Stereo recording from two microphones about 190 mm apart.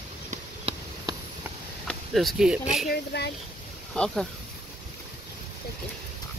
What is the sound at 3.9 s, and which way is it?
Speech, 5° left (ahead or behind).